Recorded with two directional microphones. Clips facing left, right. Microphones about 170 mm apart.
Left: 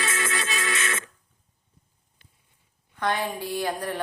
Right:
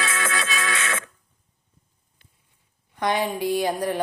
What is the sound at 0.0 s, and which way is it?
Music, 90° right.